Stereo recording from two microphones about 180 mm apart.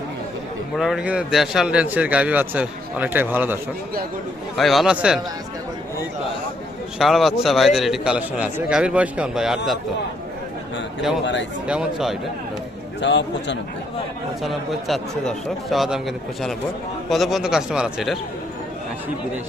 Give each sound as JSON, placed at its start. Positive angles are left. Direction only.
{"t": 0.8, "sound": "a man's voice", "side_deg": -5}
{"t": 4.5, "sound": "a man's voice", "side_deg": 0}
{"t": 7.0, "sound": "a man's voice", "side_deg": 0}
{"t": 11.7, "sound": "a man's voice", "side_deg": -5}
{"t": 13.0, "sound": "a man's voice", "side_deg": 80}
{"t": 14.4, "sound": "a man's voice", "side_deg": 0}